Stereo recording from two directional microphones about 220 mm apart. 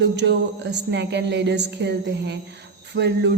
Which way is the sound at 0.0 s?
50° right (ahead or behind).